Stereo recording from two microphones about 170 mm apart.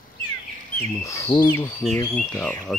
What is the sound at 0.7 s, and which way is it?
Speech, 20° left (ahead or behind).